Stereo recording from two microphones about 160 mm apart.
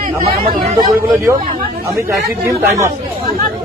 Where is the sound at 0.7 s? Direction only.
25° right (ahead or behind).